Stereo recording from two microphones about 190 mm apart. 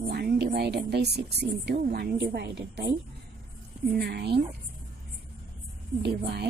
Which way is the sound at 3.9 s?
60° right (ahead or behind).